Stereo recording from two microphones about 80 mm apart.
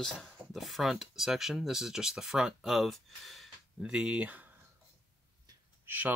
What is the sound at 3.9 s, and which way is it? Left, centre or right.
Speech, centre.